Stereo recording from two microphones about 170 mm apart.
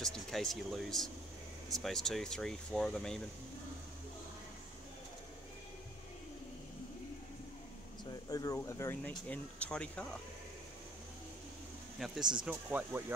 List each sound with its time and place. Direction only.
0.0 s speech: 5° left (ahead or behind)
8.0 s air conditioning: 20° left (ahead or behind)
8.6 s speech: 15° left (ahead or behind)
12.0 s speech: centre (ahead or behind)